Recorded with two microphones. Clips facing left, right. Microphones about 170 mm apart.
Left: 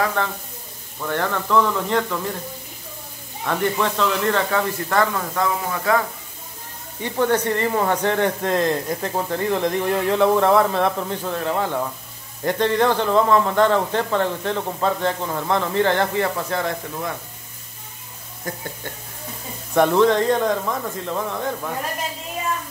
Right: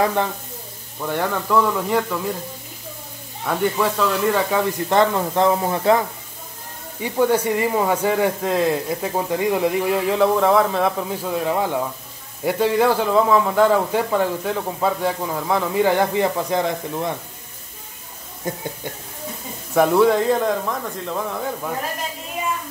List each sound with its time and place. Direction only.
0.0 s speech: 15° right (ahead or behind)
3.4 s speech: 5° right (ahead or behind); by 6.0 s 30° right (ahead or behind)
7.0 s speech: 10° right (ahead or behind)
18.4 s speech: 20° right (ahead or behind)
19.7 s speech: 5° right (ahead or behind)